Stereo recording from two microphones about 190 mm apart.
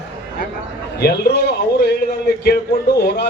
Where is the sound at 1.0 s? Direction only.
60° left (ahead or behind).